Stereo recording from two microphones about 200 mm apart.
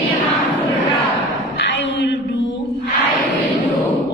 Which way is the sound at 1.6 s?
65° left (ahead or behind).